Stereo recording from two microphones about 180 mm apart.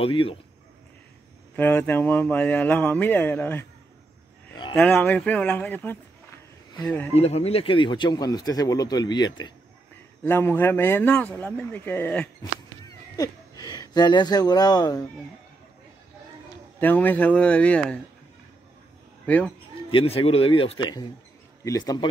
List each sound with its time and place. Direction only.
0.0 s speech: 30° left (ahead or behind)
1.6 s speech: 10° left (ahead or behind)
4.7 s speech: 5° left (ahead or behind)
7.2 s speech: 35° left (ahead or behind)
10.2 s speech: 10° left (ahead or behind)
16.8 s speech: 10° left (ahead or behind)
19.2 s speech: 10° left (ahead or behind)
19.9 s speech: 30° left (ahead or behind)